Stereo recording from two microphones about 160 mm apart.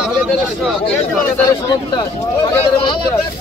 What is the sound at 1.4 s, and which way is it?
Speech, 25° left (ahead or behind).